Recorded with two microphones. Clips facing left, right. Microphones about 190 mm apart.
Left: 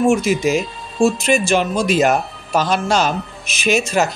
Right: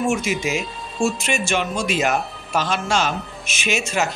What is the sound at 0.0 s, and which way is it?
Speech, 35° left (ahead or behind).